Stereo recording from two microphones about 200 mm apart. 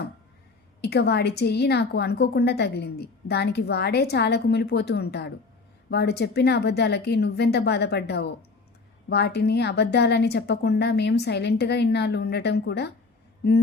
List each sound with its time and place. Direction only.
0.8 s a woman's voice: 55° left (ahead or behind)